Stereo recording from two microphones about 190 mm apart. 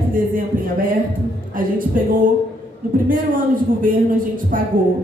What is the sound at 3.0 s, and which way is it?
Speech, 45° right (ahead or behind).